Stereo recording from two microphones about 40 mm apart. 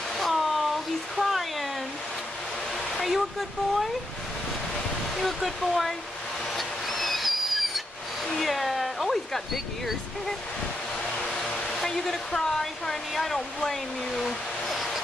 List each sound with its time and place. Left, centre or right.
0.2 s a sound: centre
2.9 s speech: centre
5.1 s speech: centre
6.5 s owl: centre
8.4 s a sound: centre
11.3 s hair dryer: centre
13.1 s speech: centre